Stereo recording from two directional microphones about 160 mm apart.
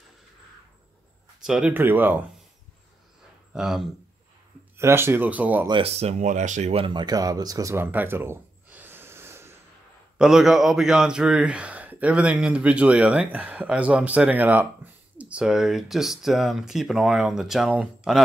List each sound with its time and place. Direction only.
1.4 s a man's voice: 5° right (ahead or behind)
3.5 s speech: centre (ahead or behind)
4.7 s a man's voice: 15° right (ahead or behind)
5.7 s speech: 40° right (ahead or behind); by 9.6 s 15° right (ahead or behind)
10.1 s a man's voice: 5° right (ahead or behind)